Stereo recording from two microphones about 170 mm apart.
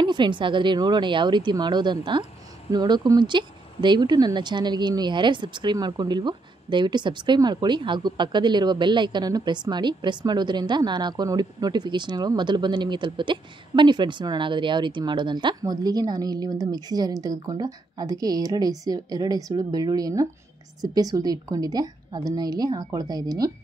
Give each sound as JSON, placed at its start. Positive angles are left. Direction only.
{"t": 0.0, "sound": "speech", "side_deg": -25}